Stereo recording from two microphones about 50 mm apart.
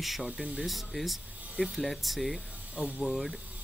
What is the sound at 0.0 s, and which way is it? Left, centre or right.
Speech, centre.